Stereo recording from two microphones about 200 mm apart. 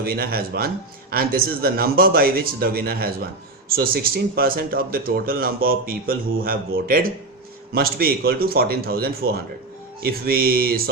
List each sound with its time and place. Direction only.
0.0 s speech: 50° right (ahead or behind)